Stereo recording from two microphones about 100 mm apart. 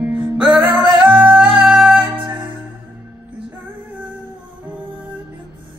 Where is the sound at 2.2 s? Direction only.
55° right (ahead or behind).